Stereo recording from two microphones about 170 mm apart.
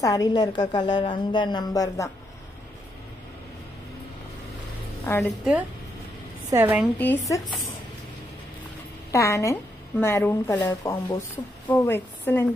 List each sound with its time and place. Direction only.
0.0 s a woman's voice: 20° left (ahead or behind)
5.1 s a woman's voice: 15° left (ahead or behind)
6.5 s a woman's voice: 10° right (ahead or behind)
7.0 s a woman's voice: 15° left (ahead or behind)
9.1 s a woman's voice: 15° left (ahead or behind)